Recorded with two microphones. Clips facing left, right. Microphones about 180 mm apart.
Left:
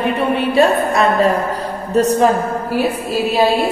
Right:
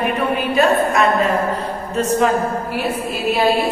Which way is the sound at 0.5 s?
35° left (ahead or behind).